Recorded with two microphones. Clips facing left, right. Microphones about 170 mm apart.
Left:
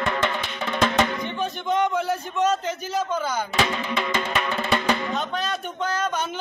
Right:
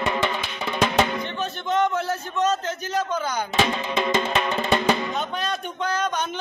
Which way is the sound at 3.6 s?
20° right (ahead or behind).